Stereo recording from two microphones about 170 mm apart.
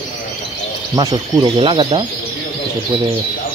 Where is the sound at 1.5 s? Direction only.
30° right (ahead or behind).